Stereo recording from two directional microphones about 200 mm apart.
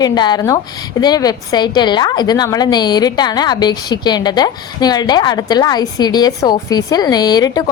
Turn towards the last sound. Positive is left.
turn(degrees=20)  # may be behind; listen again after turning